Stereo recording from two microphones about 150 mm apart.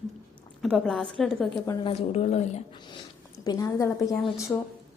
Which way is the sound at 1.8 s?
40° left (ahead or behind).